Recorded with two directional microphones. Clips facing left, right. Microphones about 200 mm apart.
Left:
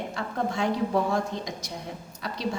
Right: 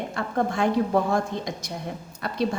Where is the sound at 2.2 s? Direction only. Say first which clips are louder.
Right 3 dB; 55° right (ahead or behind).